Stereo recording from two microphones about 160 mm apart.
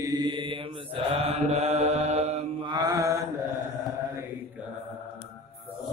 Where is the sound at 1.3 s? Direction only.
40° right (ahead or behind).